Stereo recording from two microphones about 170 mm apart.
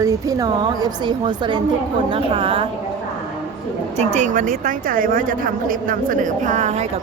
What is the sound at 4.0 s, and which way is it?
A woman's voice, 45° right (ahead or behind).